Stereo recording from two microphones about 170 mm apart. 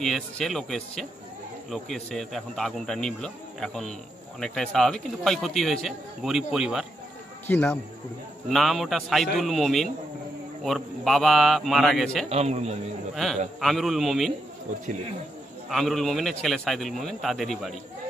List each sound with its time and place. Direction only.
0.0 s speech: centre (ahead or behind)
7.4 s a man's voice: 10° left (ahead or behind)
12.3 s a man's voice: 40° right (ahead or behind)
13.1 s a man's voice: centre (ahead or behind)
15.7 s speech: centre (ahead or behind)